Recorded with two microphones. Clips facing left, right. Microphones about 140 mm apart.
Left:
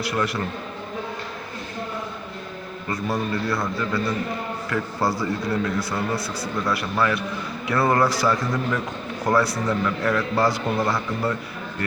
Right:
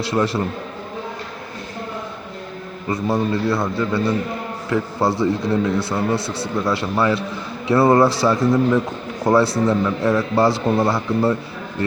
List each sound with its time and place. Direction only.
0.0 s a man's voice: 30° right (ahead or behind)
2.8 s a man's voice: 25° right (ahead or behind)